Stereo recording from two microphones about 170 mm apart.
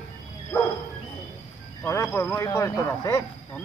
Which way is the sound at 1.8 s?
15° left (ahead or behind).